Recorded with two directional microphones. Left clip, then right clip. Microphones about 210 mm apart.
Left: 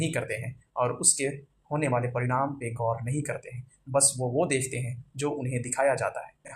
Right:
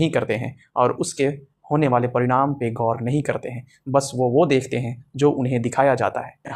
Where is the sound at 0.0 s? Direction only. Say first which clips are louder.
Right 10 dB; 40° right (ahead or behind).